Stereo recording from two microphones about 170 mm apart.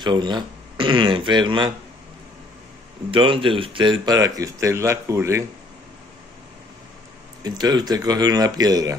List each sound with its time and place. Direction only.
0.0 s speech: 25° right (ahead or behind)
3.1 s speech: 30° right (ahead or behind)
7.4 s speech: 25° right (ahead or behind)